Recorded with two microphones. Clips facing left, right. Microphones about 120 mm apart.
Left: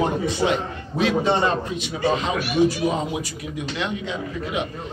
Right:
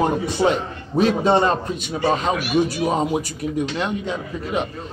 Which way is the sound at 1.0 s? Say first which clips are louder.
Right 3 dB; 40° right (ahead or behind).